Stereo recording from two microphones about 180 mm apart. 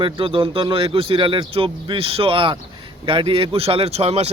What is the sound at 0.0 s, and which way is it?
A man's voice, 30° right (ahead or behind).